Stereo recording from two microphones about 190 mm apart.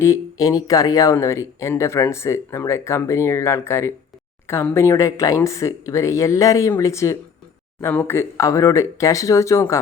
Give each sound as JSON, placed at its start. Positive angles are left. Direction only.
{"t": 0.0, "sound": "speech", "side_deg": 15}